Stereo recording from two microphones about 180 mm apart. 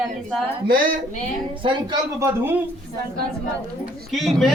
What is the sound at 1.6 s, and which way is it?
Speech, 25° right (ahead or behind).